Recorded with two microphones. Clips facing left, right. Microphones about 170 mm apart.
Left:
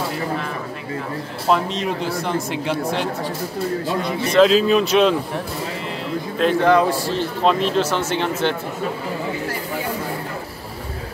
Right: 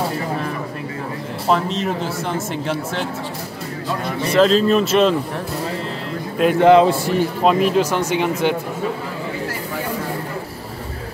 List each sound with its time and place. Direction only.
1.5 s speech: centre (ahead or behind)
4.3 s speech: centre (ahead or behind)
6.6 s a man's voice: 20° right (ahead or behind)
7.2 s speech: 10° right (ahead or behind)